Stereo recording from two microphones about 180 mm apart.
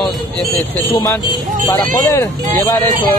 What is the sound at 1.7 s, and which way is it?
Speech, 15° left (ahead or behind).